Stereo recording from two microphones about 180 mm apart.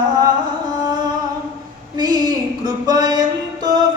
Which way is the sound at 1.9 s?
25° right (ahead or behind).